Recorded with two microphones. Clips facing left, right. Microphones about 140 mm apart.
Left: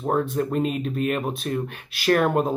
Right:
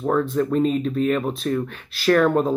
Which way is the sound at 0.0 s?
25° left (ahead or behind).